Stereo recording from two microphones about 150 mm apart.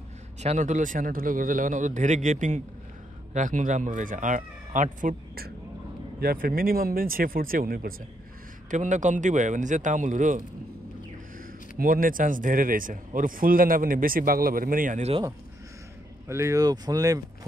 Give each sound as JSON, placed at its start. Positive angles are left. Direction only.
{"t": 0.4, "sound": "a man's voice", "side_deg": -50}
{"t": 8.6, "sound": "a man's voice", "side_deg": -55}
{"t": 11.8, "sound": "speech", "side_deg": -70}
{"t": 16.3, "sound": "speech", "side_deg": -20}